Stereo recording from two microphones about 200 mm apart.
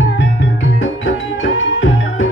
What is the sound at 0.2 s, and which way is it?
Music, 65° left (ahead or behind).